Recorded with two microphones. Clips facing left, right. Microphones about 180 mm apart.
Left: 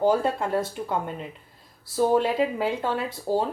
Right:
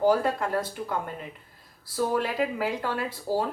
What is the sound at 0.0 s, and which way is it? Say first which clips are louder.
A woman's voice: left 1 dB; 25° left (ahead or behind).